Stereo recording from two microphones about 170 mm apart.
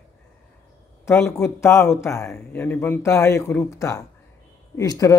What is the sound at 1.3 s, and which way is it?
Speech, 15° left (ahead or behind).